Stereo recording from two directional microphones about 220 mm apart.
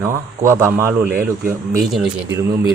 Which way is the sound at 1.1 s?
40° right (ahead or behind).